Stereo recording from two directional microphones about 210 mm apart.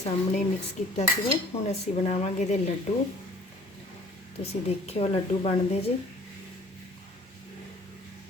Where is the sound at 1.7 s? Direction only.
30° left (ahead or behind).